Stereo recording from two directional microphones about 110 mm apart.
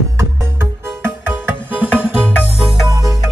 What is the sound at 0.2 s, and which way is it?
Music, 25° right (ahead or behind).